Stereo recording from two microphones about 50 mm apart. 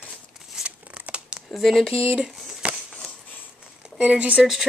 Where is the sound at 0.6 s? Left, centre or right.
Right.